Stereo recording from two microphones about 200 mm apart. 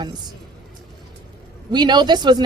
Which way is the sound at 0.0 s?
20° right (ahead or behind).